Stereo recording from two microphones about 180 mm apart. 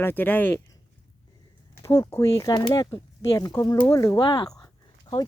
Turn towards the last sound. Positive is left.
turn(degrees=25)  # may be behind; listen again after turning